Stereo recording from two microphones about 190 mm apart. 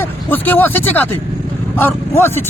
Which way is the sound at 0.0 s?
10° left (ahead or behind).